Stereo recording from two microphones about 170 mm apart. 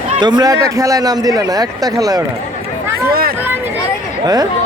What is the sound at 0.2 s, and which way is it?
A man's voice, 25° right (ahead or behind).